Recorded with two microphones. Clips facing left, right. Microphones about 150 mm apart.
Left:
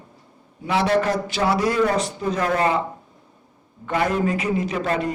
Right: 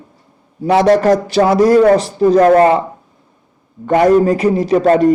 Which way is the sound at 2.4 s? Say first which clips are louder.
Right 12 dB; 50° right (ahead or behind).